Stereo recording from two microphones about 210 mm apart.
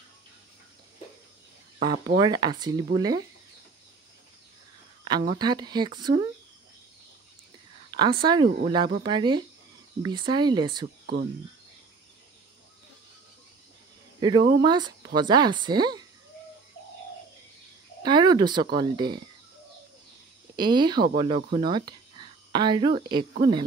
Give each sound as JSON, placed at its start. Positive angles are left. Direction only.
{"t": 2.1, "sound": "speech", "side_deg": -20}
{"t": 5.0, "sound": "speech", "side_deg": -20}
{"t": 7.9, "sound": "speech", "side_deg": -20}
{"t": 14.2, "sound": "speech", "side_deg": -20}
{"t": 18.0, "sound": "speech", "side_deg": -20}
{"t": 20.5, "sound": "speech", "side_deg": -20}